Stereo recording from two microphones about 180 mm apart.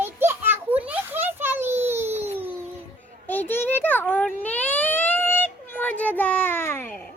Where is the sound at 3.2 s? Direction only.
10° left (ahead or behind).